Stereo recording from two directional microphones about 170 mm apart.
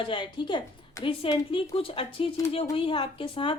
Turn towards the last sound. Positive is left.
turn(degrees=30)  # may be behind; listen again after turning